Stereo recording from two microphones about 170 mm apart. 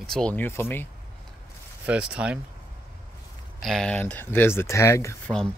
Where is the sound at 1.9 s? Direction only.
5° right (ahead or behind).